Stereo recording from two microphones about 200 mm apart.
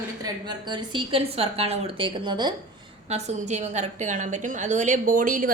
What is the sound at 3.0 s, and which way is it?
A woman's voice, 35° right (ahead or behind).